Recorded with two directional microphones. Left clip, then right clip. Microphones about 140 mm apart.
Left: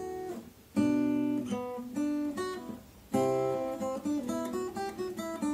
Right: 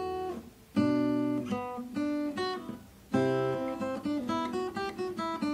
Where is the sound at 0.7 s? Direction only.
20° right (ahead or behind).